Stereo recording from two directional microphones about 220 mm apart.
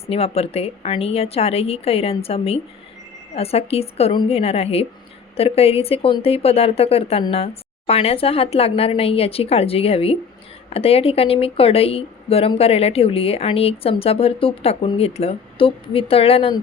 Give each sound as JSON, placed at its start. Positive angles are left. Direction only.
{"t": 0.1, "sound": "speech", "side_deg": 25}